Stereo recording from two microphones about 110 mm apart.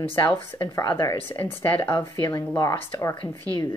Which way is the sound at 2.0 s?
40° left (ahead or behind).